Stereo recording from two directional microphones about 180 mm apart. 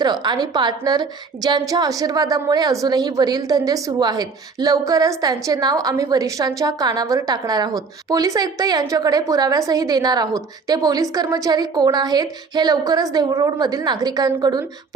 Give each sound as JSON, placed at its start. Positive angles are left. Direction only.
{"t": 0.0, "sound": "a woman's voice", "side_deg": -25}